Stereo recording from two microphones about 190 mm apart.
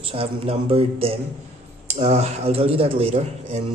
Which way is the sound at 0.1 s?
30° right (ahead or behind).